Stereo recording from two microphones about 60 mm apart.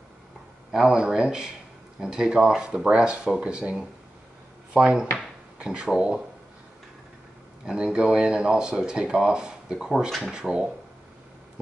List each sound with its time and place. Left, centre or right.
0.7 s speech: centre
7.6 s speech: centre